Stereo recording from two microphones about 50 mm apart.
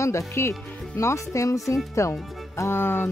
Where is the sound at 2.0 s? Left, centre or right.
Left.